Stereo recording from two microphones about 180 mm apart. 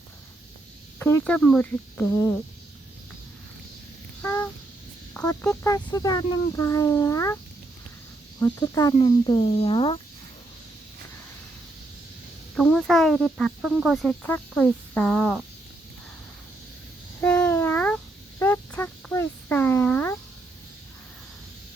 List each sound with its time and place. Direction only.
0.9 s speech: 10° left (ahead or behind)
4.2 s a sound: 15° left (ahead or behind)
5.1 s speech: 15° left (ahead or behind)
8.4 s speech: 20° left (ahead or behind)
12.5 s speech: centre (ahead or behind)
17.2 s a sound: 10° left (ahead or behind)